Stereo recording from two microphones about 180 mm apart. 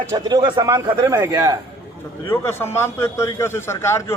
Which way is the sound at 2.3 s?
10° left (ahead or behind).